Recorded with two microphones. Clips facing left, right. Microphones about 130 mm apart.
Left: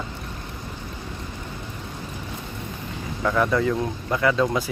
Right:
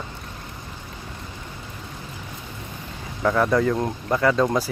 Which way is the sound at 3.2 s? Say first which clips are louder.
Right 2 dB; 20° right (ahead or behind).